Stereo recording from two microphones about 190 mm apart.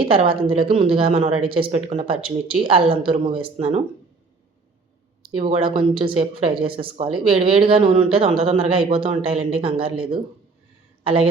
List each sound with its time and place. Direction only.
0.0 s speech: 25° right (ahead or behind)
5.4 s speech: 30° right (ahead or behind)
11.0 s a woman's voice: 30° right (ahead or behind)